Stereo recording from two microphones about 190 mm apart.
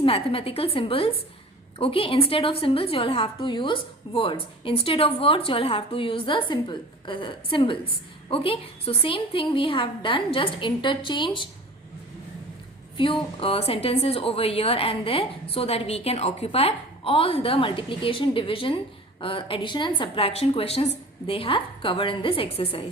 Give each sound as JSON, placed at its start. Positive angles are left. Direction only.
{"t": 0.0, "sound": "a woman's voice", "side_deg": 30}
{"t": 13.0, "sound": "a woman's voice", "side_deg": 25}